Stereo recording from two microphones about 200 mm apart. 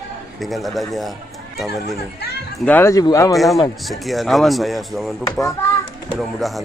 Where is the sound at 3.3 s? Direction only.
Centre (ahead or behind).